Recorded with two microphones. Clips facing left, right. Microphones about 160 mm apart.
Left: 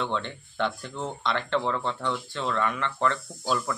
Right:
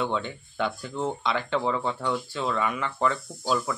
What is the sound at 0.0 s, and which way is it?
Speech, 5° right (ahead or behind).